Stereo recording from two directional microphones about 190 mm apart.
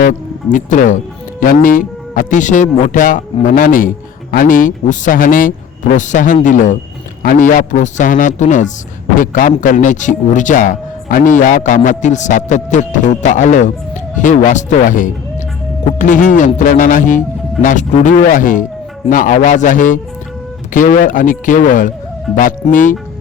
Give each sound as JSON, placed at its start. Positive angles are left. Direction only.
{"t": 0.0, "sound": "a man's voice", "side_deg": 40}